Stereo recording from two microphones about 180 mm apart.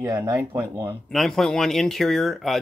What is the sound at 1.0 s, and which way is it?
Speech, centre (ahead or behind).